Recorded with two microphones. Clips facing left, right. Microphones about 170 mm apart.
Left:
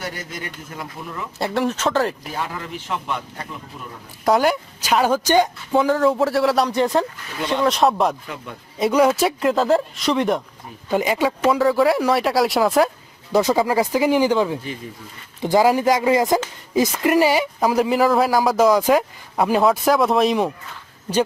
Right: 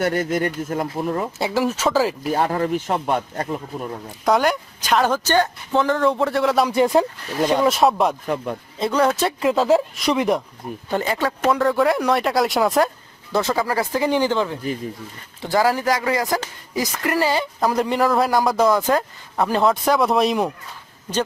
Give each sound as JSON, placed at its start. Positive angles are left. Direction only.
{"t": 0.0, "sound": "speech", "side_deg": -55}
{"t": 1.4, "sound": "a woman's voice", "side_deg": 0}
{"t": 2.3, "sound": "speech", "side_deg": -45}
{"t": 4.3, "sound": "a woman's voice", "side_deg": 0}
{"t": 7.3, "sound": "speech", "side_deg": -40}
{"t": 7.6, "sound": "a woman's voice", "side_deg": -5}
{"t": 8.8, "sound": "speech", "side_deg": 10}
{"t": 9.4, "sound": "a woman's voice", "side_deg": 0}
{"t": 10.8, "sound": "a woman's voice", "side_deg": 10}
{"t": 13.3, "sound": "speech", "side_deg": 15}